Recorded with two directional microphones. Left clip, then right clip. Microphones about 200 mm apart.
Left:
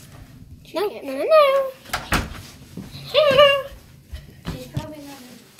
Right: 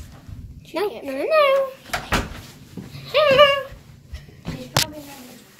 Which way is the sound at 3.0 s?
5° left (ahead or behind).